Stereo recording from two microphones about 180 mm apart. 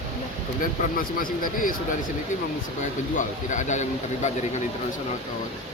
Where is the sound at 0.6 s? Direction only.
50° left (ahead or behind).